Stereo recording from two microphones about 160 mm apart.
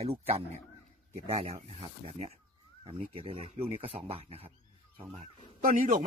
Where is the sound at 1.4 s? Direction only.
40° right (ahead or behind).